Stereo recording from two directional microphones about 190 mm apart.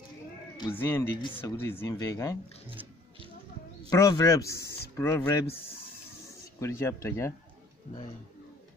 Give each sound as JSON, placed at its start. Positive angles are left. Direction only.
{"t": 0.6, "sound": "speech", "side_deg": 10}
{"t": 3.9, "sound": "speech", "side_deg": 20}
{"t": 4.6, "sound": "a sound", "side_deg": 55}
{"t": 4.9, "sound": "speech", "side_deg": 15}
{"t": 6.6, "sound": "speech", "side_deg": 15}